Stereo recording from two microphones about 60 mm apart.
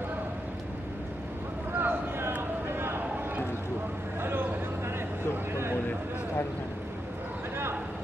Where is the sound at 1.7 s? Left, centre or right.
Right.